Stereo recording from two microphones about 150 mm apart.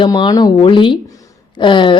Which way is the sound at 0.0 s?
30° left (ahead or behind).